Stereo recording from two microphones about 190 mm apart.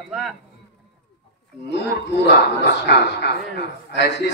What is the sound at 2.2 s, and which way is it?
A man's voice, 60° left (ahead or behind).